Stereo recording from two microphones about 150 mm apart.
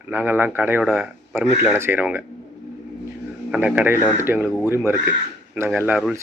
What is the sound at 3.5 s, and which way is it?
Speech, 5° right (ahead or behind).